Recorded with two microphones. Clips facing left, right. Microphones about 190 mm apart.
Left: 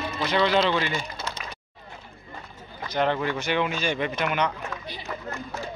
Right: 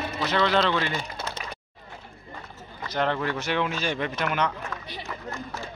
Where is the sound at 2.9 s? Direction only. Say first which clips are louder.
Left 2 dB; 5° left (ahead or behind).